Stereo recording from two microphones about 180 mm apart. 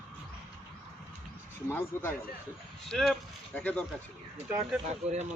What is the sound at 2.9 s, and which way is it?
Speech, 5° left (ahead or behind).